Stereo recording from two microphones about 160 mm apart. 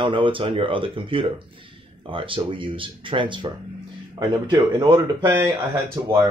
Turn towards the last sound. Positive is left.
turn(degrees=-15)  # may be behind; listen again after turning